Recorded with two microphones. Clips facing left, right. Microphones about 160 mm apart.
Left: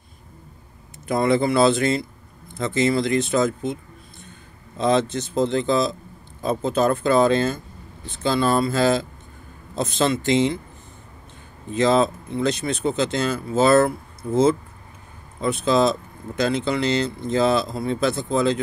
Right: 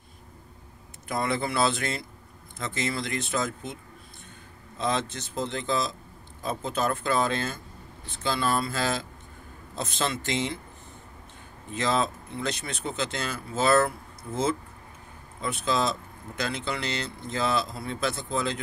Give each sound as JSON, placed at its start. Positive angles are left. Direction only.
{"t": 1.0, "sound": "speech", "side_deg": 25}
{"t": 4.7, "sound": "speech", "side_deg": 25}
{"t": 11.7, "sound": "speech", "side_deg": 25}